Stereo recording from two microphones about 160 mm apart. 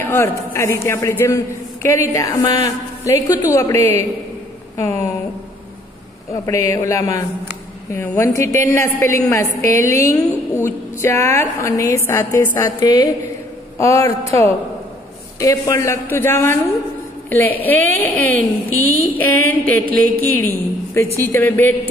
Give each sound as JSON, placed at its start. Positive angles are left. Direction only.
{"t": 0.0, "sound": "a man's voice", "side_deg": 15}
{"t": 6.4, "sound": "a man's voice", "side_deg": 20}
{"t": 18.7, "sound": "a woman's voice", "side_deg": -65}
{"t": 19.1, "sound": "a woman's voice", "side_deg": 10}